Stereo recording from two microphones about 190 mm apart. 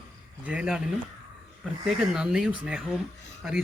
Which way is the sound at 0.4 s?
5° right (ahead or behind).